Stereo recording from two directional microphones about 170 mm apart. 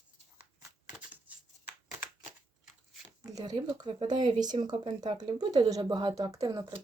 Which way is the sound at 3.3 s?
25° right (ahead or behind).